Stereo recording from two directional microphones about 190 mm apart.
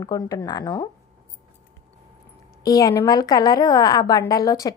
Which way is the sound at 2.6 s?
20° left (ahead or behind).